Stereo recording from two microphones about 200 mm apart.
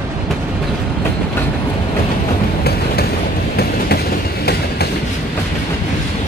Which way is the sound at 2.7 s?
50° left (ahead or behind).